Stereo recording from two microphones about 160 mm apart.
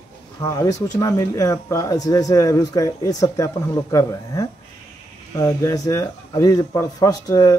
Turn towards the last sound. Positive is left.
turn(degrees=20)  # may be behind; listen again after turning